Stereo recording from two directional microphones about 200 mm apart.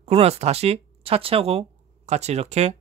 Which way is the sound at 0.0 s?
30° right (ahead or behind).